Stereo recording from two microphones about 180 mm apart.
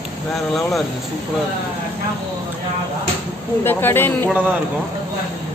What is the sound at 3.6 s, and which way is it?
Speech, 10° left (ahead or behind).